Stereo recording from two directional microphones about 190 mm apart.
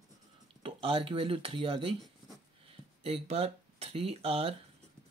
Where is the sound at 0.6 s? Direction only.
30° right (ahead or behind).